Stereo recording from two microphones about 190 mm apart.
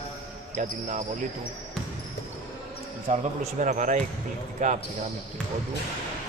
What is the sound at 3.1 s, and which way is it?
A man's voice, 40° right (ahead or behind).